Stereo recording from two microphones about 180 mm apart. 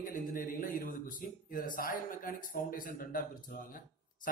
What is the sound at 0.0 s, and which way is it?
A man's voice, 50° left (ahead or behind).